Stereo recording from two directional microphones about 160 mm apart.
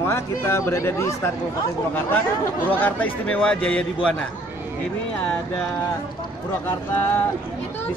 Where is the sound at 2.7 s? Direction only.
10° left (ahead or behind).